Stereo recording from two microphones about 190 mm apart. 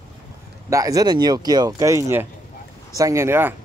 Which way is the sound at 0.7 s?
15° right (ahead or behind).